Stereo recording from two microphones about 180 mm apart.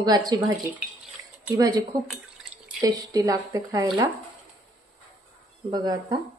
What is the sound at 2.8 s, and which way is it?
Speech, 20° right (ahead or behind).